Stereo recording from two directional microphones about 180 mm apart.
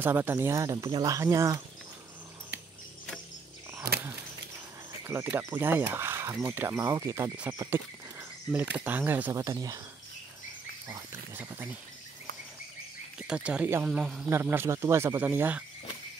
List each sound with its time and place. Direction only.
0.0 s speech: 10° right (ahead or behind)
5.0 s speech: 10° right (ahead or behind)
10.9 s speech: 15° right (ahead or behind)
13.2 s speech: 5° right (ahead or behind)